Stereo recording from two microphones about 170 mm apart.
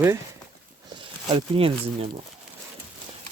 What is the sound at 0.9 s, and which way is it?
Speech, 30° right (ahead or behind).